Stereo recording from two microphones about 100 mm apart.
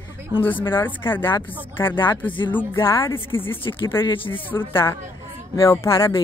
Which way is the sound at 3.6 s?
55° left (ahead or behind).